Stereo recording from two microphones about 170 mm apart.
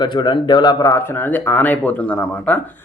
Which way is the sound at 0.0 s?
30° left (ahead or behind).